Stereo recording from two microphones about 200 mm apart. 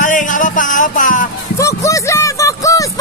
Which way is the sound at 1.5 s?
15° left (ahead or behind).